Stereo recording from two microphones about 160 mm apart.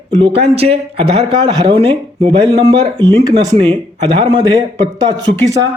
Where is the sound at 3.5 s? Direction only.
35° right (ahead or behind).